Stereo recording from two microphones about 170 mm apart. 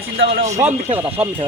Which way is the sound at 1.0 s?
15° right (ahead or behind).